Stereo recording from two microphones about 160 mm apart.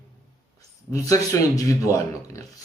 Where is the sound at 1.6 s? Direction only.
20° left (ahead or behind).